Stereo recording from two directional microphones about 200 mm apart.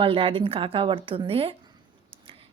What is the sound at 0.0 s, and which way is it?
Speech, 25° right (ahead or behind).